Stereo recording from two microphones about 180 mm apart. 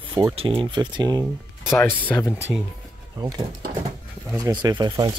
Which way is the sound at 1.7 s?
15° left (ahead or behind).